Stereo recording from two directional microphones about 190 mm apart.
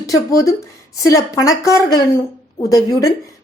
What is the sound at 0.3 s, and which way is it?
A woman's voice, 20° left (ahead or behind).